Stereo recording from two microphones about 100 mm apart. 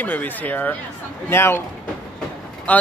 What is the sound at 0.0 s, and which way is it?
Speech, 15° left (ahead or behind).